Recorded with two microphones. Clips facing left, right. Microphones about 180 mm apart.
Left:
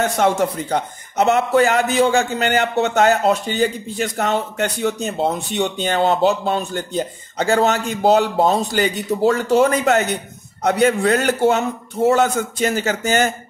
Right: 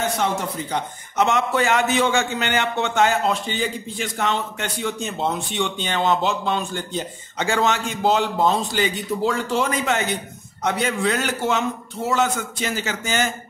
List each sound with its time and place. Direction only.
0.2 s a man's voice: 50° left (ahead or behind)